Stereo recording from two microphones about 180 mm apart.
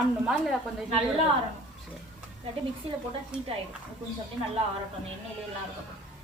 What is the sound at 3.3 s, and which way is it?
Speech, 5° right (ahead or behind).